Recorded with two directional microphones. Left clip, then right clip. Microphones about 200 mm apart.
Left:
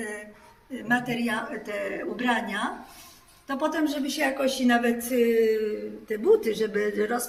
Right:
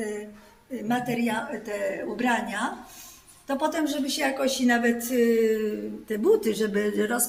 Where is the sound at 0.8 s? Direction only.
45° right (ahead or behind).